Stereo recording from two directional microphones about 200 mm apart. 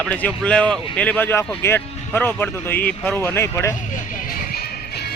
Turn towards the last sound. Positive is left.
turn(degrees=15)  # may be behind; listen again after turning